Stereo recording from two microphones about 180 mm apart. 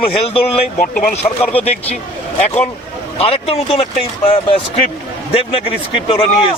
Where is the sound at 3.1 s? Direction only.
35° left (ahead or behind).